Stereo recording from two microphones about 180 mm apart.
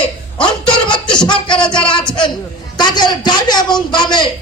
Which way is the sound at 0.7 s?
25° left (ahead or behind).